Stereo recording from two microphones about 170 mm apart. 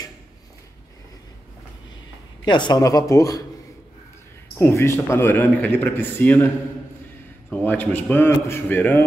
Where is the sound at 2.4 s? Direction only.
25° left (ahead or behind).